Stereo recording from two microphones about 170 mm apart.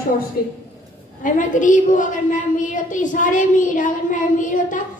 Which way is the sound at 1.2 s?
50° left (ahead or behind).